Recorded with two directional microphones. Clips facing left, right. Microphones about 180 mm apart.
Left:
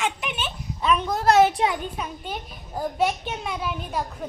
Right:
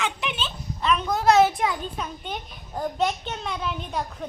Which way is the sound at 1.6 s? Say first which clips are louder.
Left 2 dB; 30° left (ahead or behind).